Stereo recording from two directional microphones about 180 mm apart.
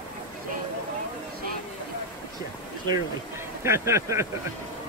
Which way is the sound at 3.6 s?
15° right (ahead or behind).